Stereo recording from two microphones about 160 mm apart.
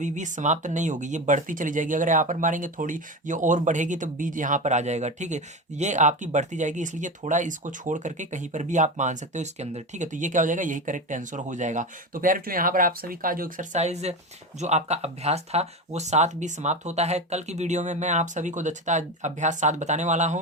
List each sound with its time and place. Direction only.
0.0 s speech: 50° right (ahead or behind)
13.7 s speech: 45° right (ahead or behind)